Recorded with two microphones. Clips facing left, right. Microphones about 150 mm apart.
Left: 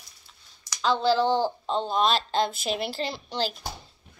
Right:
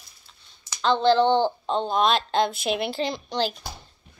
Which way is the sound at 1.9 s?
50° right (ahead or behind).